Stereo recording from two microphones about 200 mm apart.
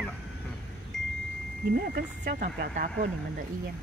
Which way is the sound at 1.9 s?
45° right (ahead or behind).